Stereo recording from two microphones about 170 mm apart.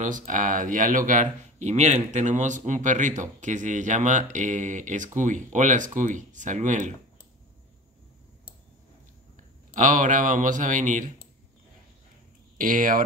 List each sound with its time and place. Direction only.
0.0 s speech: 50° right (ahead or behind)
9.8 s speech: 50° right (ahead or behind)
12.5 s speech: 50° right (ahead or behind)